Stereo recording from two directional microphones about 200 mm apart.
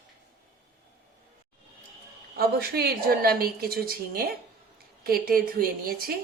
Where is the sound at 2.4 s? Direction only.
50° right (ahead or behind).